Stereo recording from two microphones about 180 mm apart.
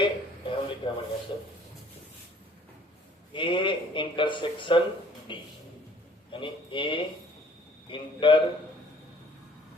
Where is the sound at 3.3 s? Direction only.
25° left (ahead or behind).